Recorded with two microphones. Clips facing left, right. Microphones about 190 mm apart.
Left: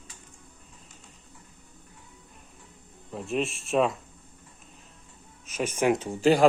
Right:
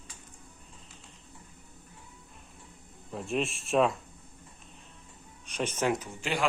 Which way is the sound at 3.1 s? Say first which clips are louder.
Left 2 dB; centre (ahead or behind).